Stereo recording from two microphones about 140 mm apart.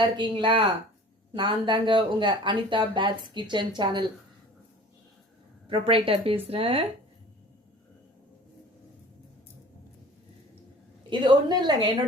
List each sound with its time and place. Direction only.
0.2 s speech: 35° right (ahead or behind)
5.6 s speech: 40° right (ahead or behind)
11.1 s speech: 35° right (ahead or behind)